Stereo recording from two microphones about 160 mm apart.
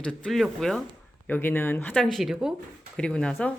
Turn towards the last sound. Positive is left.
turn(degrees=5)  # may be behind; listen again after turning